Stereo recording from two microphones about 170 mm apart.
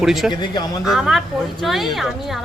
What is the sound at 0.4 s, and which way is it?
Speech, 25° left (ahead or behind).